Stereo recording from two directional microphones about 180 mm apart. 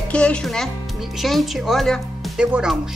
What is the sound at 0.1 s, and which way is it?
A child's voice, 5° left (ahead or behind).